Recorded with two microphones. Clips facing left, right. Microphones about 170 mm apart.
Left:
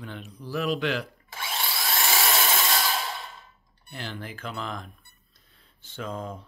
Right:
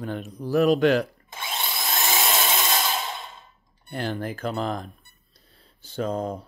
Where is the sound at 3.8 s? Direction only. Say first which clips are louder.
Right 8 dB; 50° right (ahead or behind).